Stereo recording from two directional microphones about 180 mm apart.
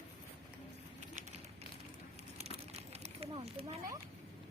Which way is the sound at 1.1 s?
45° right (ahead or behind).